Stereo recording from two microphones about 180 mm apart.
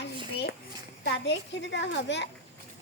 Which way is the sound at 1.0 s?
75° left (ahead or behind).